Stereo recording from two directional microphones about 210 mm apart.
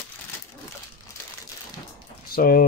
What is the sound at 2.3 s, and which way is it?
Speech, 45° left (ahead or behind).